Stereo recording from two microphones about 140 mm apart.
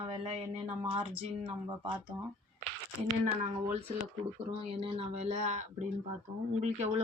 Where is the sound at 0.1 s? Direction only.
45° right (ahead or behind).